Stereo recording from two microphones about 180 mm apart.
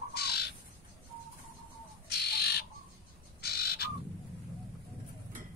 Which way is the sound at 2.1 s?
65° left (ahead or behind).